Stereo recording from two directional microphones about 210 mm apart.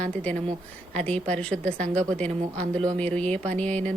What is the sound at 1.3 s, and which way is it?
Speech, 5° left (ahead or behind).